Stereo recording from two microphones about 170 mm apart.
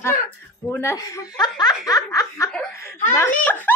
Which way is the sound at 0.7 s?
15° left (ahead or behind).